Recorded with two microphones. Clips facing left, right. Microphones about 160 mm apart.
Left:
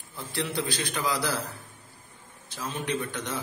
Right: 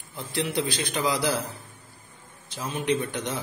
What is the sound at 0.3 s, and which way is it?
A man's voice, 15° right (ahead or behind).